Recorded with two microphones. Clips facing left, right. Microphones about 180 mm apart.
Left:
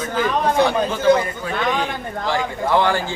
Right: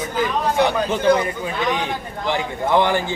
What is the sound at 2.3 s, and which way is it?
Speech, 20° right (ahead or behind).